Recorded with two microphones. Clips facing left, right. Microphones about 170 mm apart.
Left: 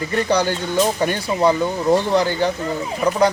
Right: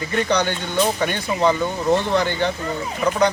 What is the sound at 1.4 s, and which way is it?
Speech, 10° left (ahead or behind).